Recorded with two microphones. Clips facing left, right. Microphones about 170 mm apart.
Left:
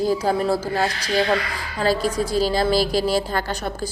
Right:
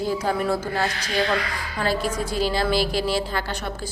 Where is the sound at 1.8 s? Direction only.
35° left (ahead or behind).